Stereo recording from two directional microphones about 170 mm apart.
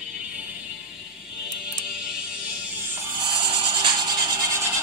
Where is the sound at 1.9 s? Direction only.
5° right (ahead or behind).